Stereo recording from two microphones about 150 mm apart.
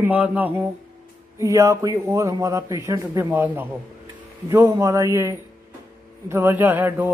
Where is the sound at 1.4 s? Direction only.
20° right (ahead or behind).